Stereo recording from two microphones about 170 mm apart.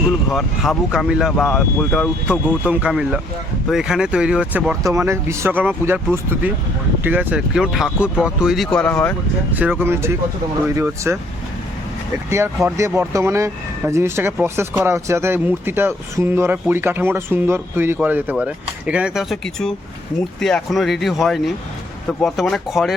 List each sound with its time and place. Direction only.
0.3 s speech: centre (ahead or behind)
2.6 s speech: 5° right (ahead or behind)
4.8 s speech: 15° right (ahead or behind); by 9.1 s 10° left (ahead or behind)
9.5 s speech: 10° right (ahead or behind)
12.7 s speech: 15° right (ahead or behind); by 23.0 s centre (ahead or behind)